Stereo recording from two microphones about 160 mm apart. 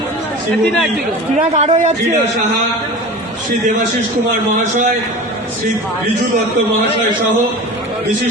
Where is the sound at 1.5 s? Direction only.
45° right (ahead or behind).